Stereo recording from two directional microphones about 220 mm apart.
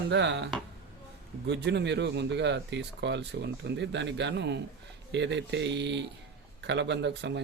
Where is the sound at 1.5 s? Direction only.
50° right (ahead or behind).